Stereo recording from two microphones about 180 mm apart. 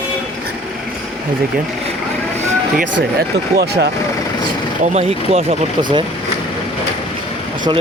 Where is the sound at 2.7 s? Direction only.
60° right (ahead or behind).